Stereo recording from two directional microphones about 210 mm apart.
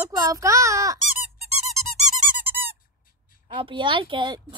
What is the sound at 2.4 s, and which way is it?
Squeak, 10° right (ahead or behind).